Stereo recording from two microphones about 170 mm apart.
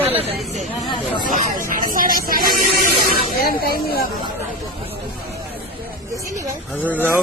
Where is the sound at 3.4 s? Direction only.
65° left (ahead or behind).